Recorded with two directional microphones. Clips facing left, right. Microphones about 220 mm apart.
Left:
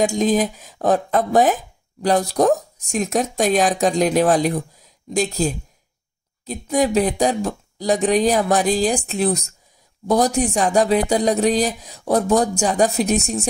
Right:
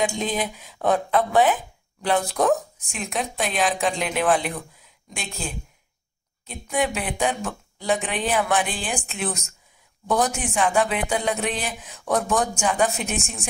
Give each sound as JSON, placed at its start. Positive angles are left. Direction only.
{"t": 0.0, "sound": "speech", "side_deg": 45}